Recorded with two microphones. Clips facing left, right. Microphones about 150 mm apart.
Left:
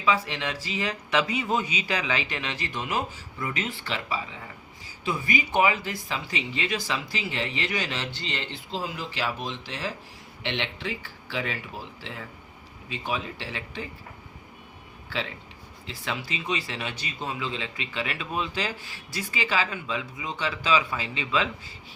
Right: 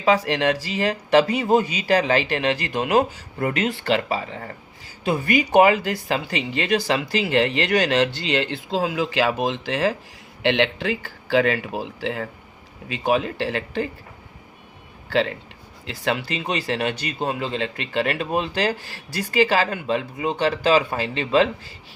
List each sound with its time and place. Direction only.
0.1 s speech: 80° right
1.5 s a man's voice: 45° right (ahead or behind)
2.4 s speech: 65° right (ahead or behind)
15.1 s a man's voice: 70° right (ahead or behind)